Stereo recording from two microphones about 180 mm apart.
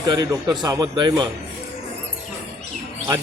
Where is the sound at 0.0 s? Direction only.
20° right (ahead or behind).